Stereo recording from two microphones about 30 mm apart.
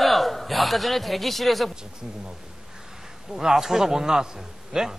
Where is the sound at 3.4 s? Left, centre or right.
Centre.